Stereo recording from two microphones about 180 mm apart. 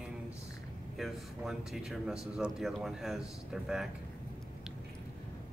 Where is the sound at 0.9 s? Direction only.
Centre (ahead or behind).